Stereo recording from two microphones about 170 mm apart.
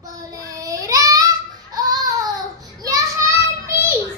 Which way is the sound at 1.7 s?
25° right (ahead or behind).